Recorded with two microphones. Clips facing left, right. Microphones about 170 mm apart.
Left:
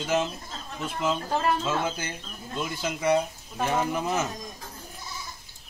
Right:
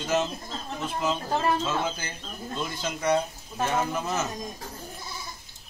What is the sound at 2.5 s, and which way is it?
Speech, 10° left (ahead or behind).